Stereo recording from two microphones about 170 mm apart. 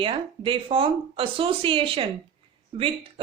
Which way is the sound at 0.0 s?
30° right (ahead or behind).